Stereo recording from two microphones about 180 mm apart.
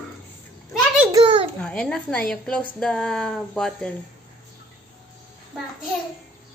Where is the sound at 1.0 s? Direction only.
25° right (ahead or behind).